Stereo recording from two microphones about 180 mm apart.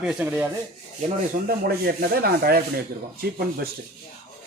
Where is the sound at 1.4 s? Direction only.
55° right (ahead or behind).